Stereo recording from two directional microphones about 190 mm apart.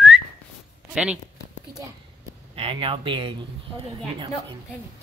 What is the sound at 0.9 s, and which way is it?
Speech, 5° right (ahead or behind).